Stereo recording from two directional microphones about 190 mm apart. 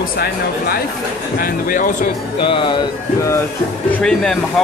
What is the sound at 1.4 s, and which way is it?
Speech, 45° left (ahead or behind).